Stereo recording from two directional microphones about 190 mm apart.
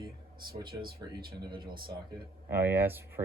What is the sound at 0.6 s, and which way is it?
Speech, 50° right (ahead or behind).